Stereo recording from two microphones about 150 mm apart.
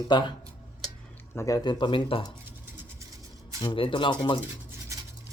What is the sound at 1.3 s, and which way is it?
Speech, 20° left (ahead or behind).